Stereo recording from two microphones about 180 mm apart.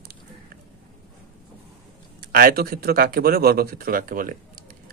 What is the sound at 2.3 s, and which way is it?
Speech, 55° right (ahead or behind).